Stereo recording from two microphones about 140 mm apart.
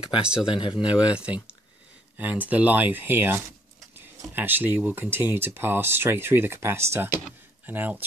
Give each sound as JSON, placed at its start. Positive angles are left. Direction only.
{"t": 0.2, "sound": "speech", "side_deg": -5}
{"t": 0.6, "sound": "speech", "side_deg": 35}
{"t": 0.8, "sound": "speech", "side_deg": -10}